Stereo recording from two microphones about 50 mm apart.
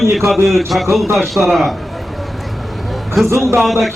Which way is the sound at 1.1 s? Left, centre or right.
Centre.